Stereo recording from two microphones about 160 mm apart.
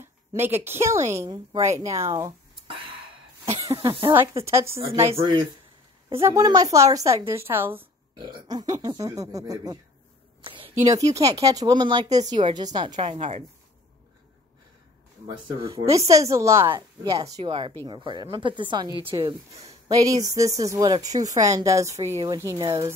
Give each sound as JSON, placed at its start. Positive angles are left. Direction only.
{"t": 0.0, "sound": "speech", "side_deg": -15}
{"t": 3.6, "sound": "a woman's voice", "side_deg": -20}
{"t": 5.1, "sound": "speech", "side_deg": -30}
{"t": 8.2, "sound": "speech", "side_deg": -25}
{"t": 10.4, "sound": "a sound", "side_deg": -35}
{"t": 10.7, "sound": "speech", "side_deg": -20}
{"t": 12.9, "sound": "a woman's voice", "side_deg": -50}
{"t": 15.7, "sound": "speech", "side_deg": -20}
{"t": 17.5, "sound": "speech", "side_deg": -35}